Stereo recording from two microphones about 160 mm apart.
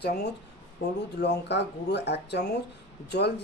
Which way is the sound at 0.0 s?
90° left.